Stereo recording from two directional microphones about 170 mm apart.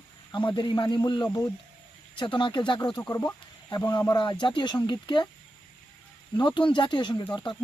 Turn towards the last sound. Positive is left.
turn(degrees=25)  # may be behind; listen again after turning